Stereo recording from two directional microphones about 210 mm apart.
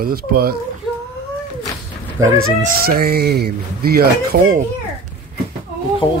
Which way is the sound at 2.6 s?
45° right (ahead or behind).